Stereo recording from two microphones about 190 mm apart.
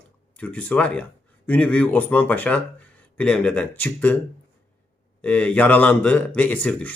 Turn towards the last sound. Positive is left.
turn(degrees=10)  # may be behind; listen again after turning